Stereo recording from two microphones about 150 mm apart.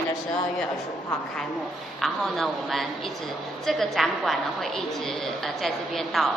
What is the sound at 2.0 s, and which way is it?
A woman's voice, centre (ahead or behind).